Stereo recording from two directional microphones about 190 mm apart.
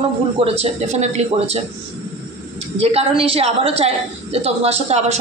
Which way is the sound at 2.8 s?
30° right (ahead or behind).